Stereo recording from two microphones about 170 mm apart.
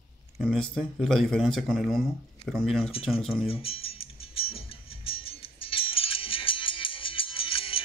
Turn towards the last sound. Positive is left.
turn(degrees=30)  # may be behind; listen again after turning